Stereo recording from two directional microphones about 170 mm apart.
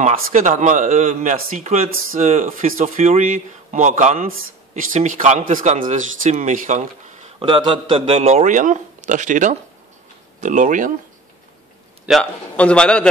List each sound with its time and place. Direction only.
0.0 s speech: 50° right (ahead or behind)
7.3 s speech: 30° right (ahead or behind); by 10.9 s 50° right (ahead or behind)
12.1 s a man's voice: 5° left (ahead or behind)